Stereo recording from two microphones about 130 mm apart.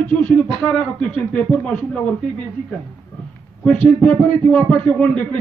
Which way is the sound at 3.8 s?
10° left (ahead or behind).